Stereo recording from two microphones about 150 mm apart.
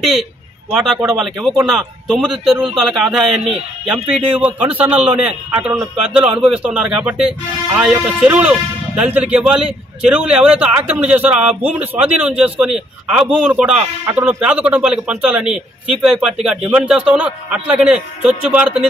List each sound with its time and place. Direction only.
0.0 s a man's voice: centre (ahead or behind)